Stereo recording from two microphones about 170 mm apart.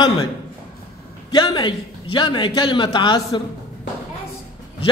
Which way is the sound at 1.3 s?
25° left (ahead or behind).